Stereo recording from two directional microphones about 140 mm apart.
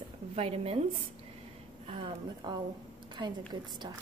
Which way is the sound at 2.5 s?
30° right (ahead or behind).